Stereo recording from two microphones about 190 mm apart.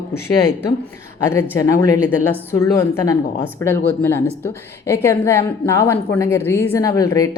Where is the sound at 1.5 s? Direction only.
20° left (ahead or behind).